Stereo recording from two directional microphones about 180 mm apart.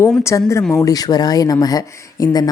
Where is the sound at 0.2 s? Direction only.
15° left (ahead or behind).